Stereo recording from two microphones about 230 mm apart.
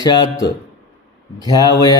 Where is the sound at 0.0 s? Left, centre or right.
Centre.